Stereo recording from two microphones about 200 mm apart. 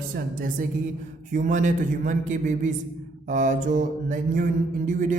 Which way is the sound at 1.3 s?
40° right (ahead or behind).